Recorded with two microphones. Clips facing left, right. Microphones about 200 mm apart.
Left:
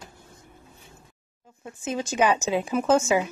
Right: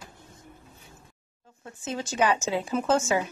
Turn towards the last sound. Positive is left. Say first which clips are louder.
# left 3 dB
turn(degrees=15)  # may be behind; listen again after turning